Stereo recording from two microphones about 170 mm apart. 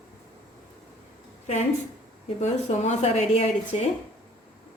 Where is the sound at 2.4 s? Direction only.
40° left (ahead or behind).